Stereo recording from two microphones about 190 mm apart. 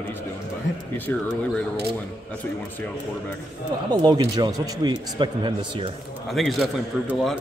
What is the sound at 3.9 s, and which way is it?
Speech, 20° right (ahead or behind).